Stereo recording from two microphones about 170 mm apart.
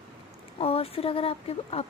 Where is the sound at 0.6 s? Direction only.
35° left (ahead or behind).